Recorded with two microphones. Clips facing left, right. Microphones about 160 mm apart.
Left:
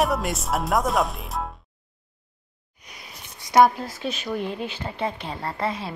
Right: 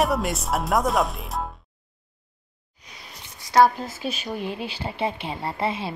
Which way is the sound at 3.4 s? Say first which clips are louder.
Left 1 dB; 15° left (ahead or behind).